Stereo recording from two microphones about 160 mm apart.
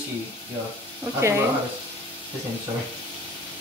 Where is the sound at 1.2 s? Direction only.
15° right (ahead or behind).